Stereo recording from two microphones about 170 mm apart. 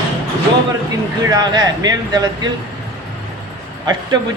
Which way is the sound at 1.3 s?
25° right (ahead or behind).